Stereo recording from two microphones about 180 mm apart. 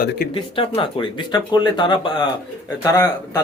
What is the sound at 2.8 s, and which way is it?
Speech, 10° left (ahead or behind).